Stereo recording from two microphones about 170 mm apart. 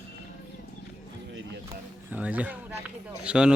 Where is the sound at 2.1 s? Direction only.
10° right (ahead or behind).